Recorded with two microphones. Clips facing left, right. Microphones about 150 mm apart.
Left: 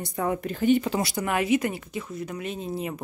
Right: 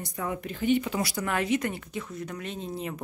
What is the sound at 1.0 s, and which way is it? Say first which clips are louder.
A woman's voice: left 3 dB; 15° left (ahead or behind).